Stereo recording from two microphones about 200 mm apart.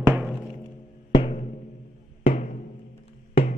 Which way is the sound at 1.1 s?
25° left (ahead or behind).